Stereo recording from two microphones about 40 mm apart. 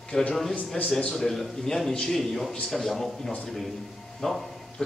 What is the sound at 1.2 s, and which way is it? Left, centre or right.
A man's voice, centre.